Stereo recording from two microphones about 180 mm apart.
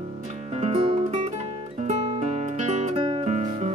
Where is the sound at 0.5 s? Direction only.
35° right (ahead or behind).